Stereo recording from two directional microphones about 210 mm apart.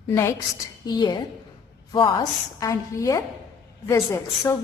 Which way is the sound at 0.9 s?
20° left (ahead or behind).